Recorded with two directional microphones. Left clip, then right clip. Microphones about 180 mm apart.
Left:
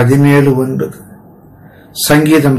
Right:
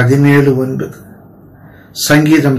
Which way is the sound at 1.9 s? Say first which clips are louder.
Left 1 dB; 15° left (ahead or behind).